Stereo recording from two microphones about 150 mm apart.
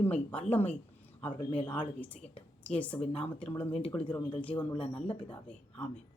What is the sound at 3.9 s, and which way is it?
Speech, 10° left (ahead or behind).